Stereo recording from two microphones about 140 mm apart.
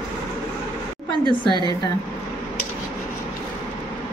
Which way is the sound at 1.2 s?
35° left (ahead or behind).